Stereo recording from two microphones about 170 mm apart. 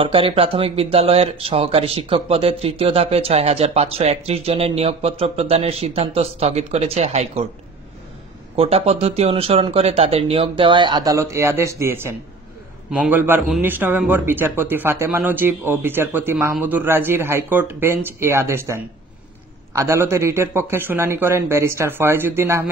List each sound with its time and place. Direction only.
0.0 s speech: 35° right (ahead or behind)
8.5 s speech: 35° right (ahead or behind); by 22.7 s 15° right (ahead or behind)